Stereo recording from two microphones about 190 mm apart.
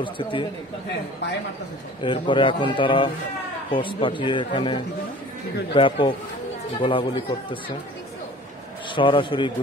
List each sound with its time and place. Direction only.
0.0 s a man's voice: 25° left (ahead or behind)
2.0 s a man's voice: 25° left (ahead or behind)
8.9 s a man's voice: 25° left (ahead or behind)